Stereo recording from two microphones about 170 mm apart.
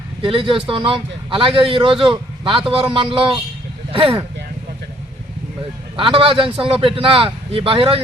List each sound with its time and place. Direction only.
0.2 s a man's voice: 30° right (ahead or behind)
6.0 s a man's voice: 30° right (ahead or behind)